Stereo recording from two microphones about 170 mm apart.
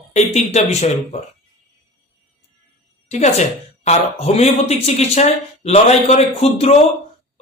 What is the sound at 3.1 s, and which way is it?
A woman's voice, 45° left (ahead or behind).